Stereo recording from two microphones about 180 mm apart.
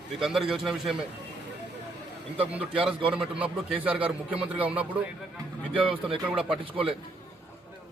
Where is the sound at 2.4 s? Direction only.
10° right (ahead or behind).